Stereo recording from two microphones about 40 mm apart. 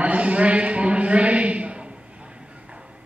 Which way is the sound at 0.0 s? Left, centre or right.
Right.